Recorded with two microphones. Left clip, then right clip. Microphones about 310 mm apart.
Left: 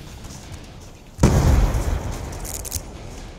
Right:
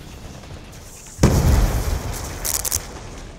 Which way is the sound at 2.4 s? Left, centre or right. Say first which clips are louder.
Right 7 dB; centre.